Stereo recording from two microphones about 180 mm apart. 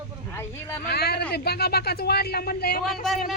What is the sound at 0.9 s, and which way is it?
Speech, 60° left (ahead or behind).